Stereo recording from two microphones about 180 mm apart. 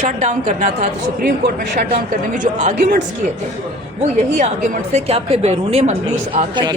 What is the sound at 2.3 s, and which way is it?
Speech, 45° right (ahead or behind).